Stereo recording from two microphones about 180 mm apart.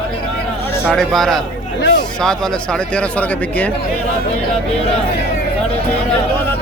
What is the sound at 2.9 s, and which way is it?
Speech, 10° left (ahead or behind).